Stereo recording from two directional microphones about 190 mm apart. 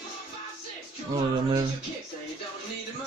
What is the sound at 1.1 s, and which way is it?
Music, 20° right (ahead or behind).